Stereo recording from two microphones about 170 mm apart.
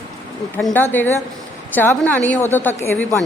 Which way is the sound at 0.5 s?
10° left (ahead or behind).